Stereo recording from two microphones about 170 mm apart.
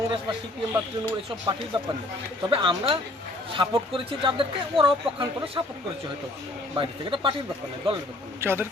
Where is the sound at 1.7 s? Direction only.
25° right (ahead or behind).